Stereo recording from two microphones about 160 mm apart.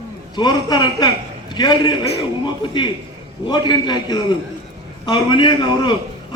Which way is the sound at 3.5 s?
25° left (ahead or behind).